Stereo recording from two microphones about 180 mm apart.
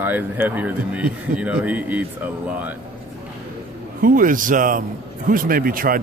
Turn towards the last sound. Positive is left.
turn(degrees=-55)  # may be behind; listen again after turning